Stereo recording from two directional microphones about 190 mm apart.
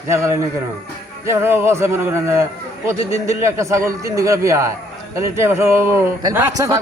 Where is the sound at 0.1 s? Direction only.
15° right (ahead or behind).